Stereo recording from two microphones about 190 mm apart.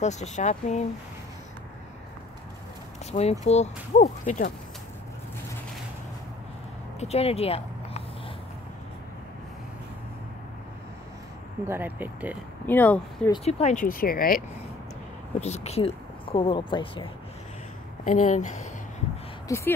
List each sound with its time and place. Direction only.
0.0 s speech: 35° left (ahead or behind)
3.1 s speech: 35° left (ahead or behind)
7.0 s speech: 35° left (ahead or behind)
11.6 s speech: 10° right (ahead or behind)
12.6 s speech: 10° left (ahead or behind)
13.3 s speech: 35° left (ahead or behind); by 14.4 s 50° left (ahead or behind)
15.4 s speech: 35° left (ahead or behind)
18.0 s speech: 40° left (ahead or behind)
19.4 s speech: 15° left (ahead or behind)